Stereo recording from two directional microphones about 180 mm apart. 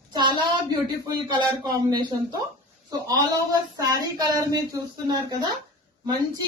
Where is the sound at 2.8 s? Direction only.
20° right (ahead or behind).